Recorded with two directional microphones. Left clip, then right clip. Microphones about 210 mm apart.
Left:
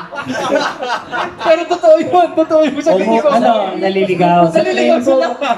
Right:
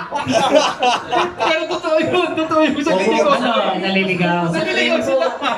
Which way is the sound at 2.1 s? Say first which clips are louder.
Left 6 dB; 30° left (ahead or behind).